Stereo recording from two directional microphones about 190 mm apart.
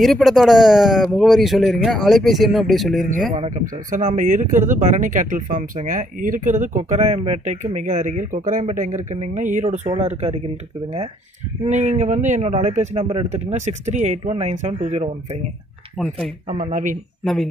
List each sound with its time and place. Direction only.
0.0 s speech: centre (ahead or behind)
3.3 s speech: 40° right (ahead or behind)
11.6 s speech: 35° right (ahead or behind)
16.0 s speech: centre (ahead or behind)
16.4 s speech: 35° right (ahead or behind)
17.2 s speech: centre (ahead or behind)